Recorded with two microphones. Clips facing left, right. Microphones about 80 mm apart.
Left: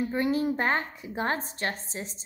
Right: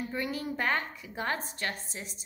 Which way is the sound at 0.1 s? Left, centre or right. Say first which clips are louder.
Left 8 dB; left.